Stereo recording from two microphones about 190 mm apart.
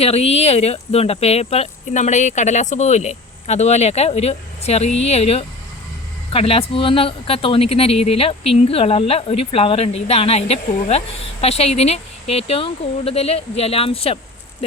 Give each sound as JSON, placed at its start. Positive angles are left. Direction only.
{"t": 0.0, "sound": "speech", "side_deg": 35}